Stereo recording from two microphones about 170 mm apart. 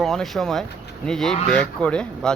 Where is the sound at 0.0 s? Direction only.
Centre (ahead or behind).